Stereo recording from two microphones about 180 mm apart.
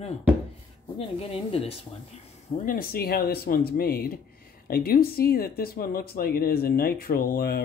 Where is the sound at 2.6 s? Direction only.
55° left (ahead or behind).